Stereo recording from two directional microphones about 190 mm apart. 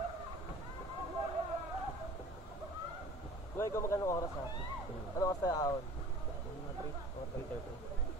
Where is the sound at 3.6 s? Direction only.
15° left (ahead or behind).